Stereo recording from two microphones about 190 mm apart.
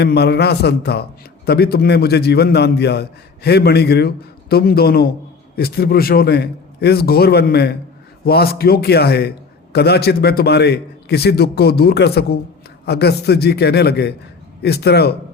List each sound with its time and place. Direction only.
0.0 s a man's voice: 60° left (ahead or behind)